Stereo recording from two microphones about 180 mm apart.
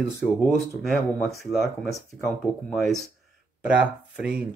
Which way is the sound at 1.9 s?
15° left (ahead or behind).